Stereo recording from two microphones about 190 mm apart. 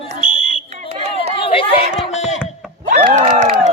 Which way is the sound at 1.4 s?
30° left (ahead or behind).